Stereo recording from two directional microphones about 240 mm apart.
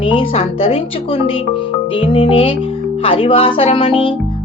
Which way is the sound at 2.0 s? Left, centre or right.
Left.